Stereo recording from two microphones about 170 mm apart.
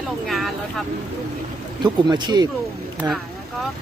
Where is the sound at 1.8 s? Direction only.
25° right (ahead or behind).